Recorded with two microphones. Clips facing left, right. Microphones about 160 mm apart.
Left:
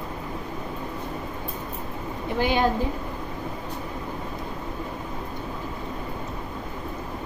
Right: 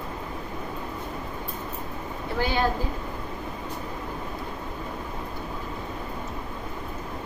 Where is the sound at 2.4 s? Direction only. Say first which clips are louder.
Left 3 dB; 15° left (ahead or behind).